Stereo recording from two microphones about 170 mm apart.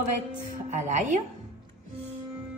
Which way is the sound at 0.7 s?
45° right (ahead or behind).